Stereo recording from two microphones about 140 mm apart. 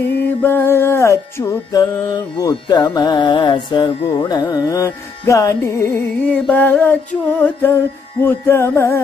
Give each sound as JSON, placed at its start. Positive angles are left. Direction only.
{"t": 0.4, "sound": "music", "side_deg": 15}
{"t": 5.9, "sound": "music", "side_deg": 10}